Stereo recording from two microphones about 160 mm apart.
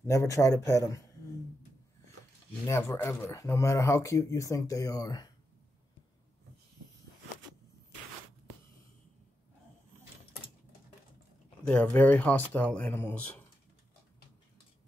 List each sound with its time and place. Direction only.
0.0 s speech: 20° left (ahead or behind)
3.0 s speech: 15° left (ahead or behind)
11.6 s speech: 10° left (ahead or behind)